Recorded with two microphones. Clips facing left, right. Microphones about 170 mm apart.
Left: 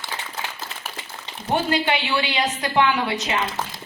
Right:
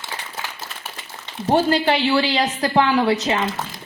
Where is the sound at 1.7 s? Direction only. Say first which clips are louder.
Right 4 dB; 35° right (ahead or behind).